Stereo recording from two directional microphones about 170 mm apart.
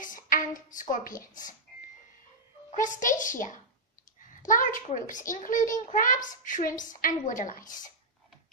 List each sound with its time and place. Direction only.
0.0 s a sound: 50° left (ahead or behind)
0.7 s a child's voice: 50° left (ahead or behind)
2.7 s a child's voice: 50° left (ahead or behind)